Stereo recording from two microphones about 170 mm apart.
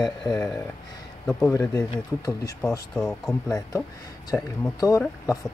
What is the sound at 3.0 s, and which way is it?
Speech, 5° left (ahead or behind).